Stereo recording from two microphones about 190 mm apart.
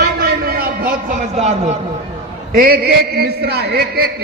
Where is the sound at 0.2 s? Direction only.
55° right (ahead or behind).